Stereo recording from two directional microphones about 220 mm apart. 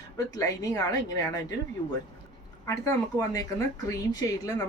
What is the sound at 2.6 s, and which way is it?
Speech, 15° left (ahead or behind).